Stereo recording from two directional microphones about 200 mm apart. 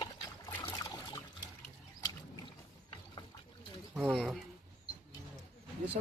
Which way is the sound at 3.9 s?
Centre (ahead or behind).